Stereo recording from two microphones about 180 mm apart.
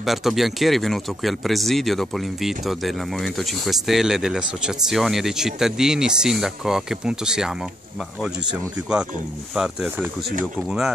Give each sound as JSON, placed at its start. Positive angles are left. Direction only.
{"t": 0.0, "sound": "speech", "side_deg": 0}